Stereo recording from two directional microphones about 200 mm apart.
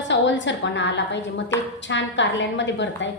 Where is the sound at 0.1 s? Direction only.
65° left (ahead or behind).